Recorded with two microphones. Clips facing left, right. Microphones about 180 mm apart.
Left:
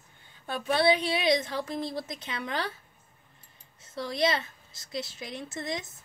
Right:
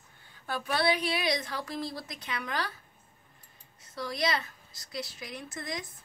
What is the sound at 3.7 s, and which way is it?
A woman's voice, 25° left (ahead or behind).